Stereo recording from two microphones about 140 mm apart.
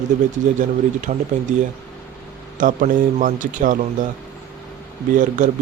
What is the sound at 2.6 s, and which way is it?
A man's voice, 70° right (ahead or behind).